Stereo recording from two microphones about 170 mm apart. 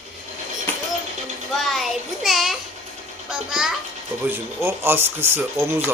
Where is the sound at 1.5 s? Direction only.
Centre (ahead or behind).